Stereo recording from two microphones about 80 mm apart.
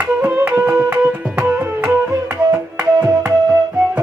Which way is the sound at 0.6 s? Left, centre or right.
Centre.